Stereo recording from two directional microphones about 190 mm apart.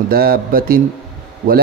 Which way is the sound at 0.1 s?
50° right (ahead or behind).